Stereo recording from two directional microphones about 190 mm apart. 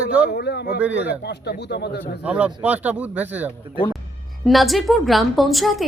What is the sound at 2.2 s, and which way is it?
A woman's voice, 5° right (ahead or behind).